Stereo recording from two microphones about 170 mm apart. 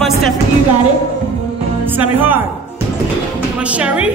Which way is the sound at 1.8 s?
10° right (ahead or behind).